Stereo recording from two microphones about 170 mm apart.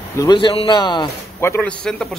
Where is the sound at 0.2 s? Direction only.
25° left (ahead or behind).